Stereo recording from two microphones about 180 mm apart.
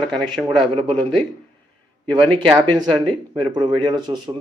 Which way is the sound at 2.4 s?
25° right (ahead or behind).